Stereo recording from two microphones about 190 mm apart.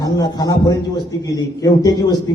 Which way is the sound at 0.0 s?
20° left (ahead or behind).